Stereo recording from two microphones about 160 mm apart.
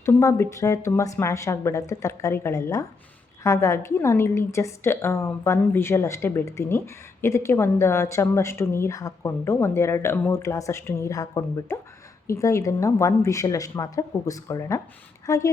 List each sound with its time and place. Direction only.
0.0 s a woman's voice: 15° left (ahead or behind)